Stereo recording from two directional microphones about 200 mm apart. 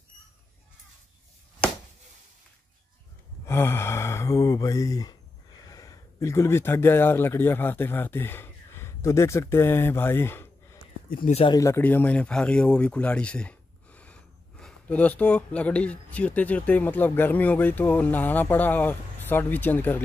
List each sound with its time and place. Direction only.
3.4 s speech: 10° left (ahead or behind)
11.1 s speech: 45° left (ahead or behind)
11.3 s speech: 20° left (ahead or behind)